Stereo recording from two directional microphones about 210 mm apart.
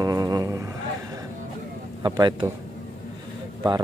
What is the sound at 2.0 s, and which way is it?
Speech, 20° right (ahead or behind).